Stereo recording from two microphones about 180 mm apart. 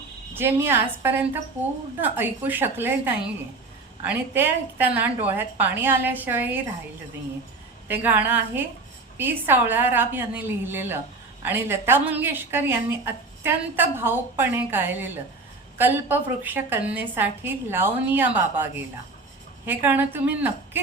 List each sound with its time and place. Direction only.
0.3 s a woman's voice: 10° right (ahead or behind)
7.9 s a woman's voice: 10° right (ahead or behind)